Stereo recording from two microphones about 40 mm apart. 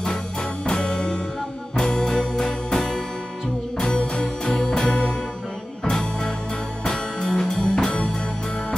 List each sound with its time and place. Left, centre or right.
0.7 s music: left